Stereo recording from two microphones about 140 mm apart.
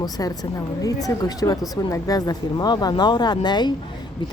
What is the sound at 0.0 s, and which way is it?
Speech, 25° left (ahead or behind).